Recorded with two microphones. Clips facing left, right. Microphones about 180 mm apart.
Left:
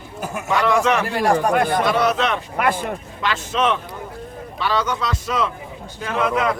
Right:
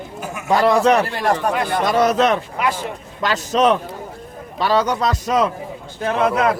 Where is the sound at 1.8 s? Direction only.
40° right (ahead or behind).